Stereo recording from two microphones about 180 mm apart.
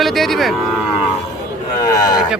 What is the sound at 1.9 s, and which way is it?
Speech, 20° left (ahead or behind).